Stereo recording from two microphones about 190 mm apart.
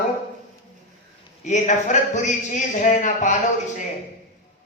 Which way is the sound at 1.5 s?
40° left (ahead or behind).